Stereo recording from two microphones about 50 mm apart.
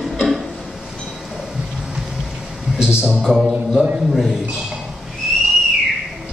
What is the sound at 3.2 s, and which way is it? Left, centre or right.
A man's voice, centre.